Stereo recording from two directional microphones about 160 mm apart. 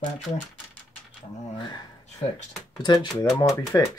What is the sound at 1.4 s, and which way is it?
Speech, 40° left (ahead or behind).